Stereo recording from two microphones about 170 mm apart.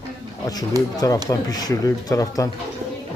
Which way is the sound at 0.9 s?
20° left (ahead or behind).